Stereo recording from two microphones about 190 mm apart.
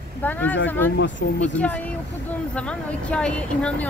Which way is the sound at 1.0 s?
75° left (ahead or behind).